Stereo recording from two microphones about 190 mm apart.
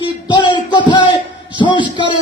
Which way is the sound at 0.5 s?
25° left (ahead or behind).